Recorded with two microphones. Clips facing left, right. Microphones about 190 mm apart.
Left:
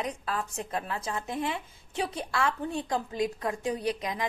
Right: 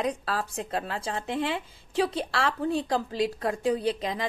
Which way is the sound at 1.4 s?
90° right.